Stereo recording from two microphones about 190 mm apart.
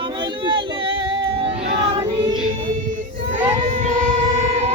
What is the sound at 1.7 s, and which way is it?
Child singing, 30° right (ahead or behind).